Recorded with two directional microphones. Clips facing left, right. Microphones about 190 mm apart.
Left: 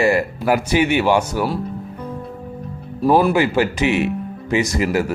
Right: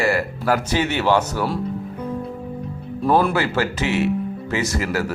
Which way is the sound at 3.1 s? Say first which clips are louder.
Left 3 dB; 15° left (ahead or behind).